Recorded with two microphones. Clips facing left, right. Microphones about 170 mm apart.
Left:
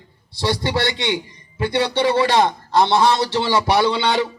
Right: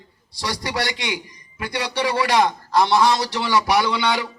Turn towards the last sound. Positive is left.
turn(degrees=25)  # may be behind; listen again after turning